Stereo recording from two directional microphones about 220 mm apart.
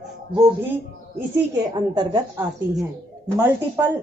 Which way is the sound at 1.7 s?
20° right (ahead or behind).